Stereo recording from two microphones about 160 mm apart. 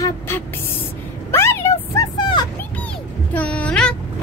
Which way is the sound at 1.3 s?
15° left (ahead or behind).